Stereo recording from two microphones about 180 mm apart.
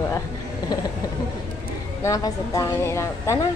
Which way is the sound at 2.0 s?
20° left (ahead or behind).